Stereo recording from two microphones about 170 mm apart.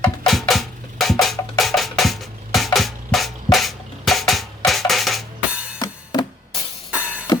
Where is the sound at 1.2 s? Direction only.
Centre (ahead or behind).